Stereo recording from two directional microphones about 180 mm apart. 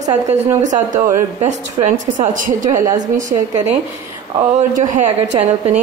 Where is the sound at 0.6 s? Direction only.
45° right (ahead or behind).